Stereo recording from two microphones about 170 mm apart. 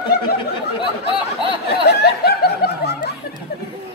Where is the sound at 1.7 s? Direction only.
70° left (ahead or behind).